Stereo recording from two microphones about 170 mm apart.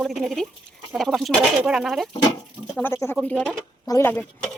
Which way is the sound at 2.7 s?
15° left (ahead or behind).